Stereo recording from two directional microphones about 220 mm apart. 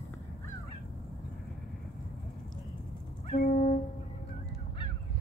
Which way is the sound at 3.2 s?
35° left (ahead or behind).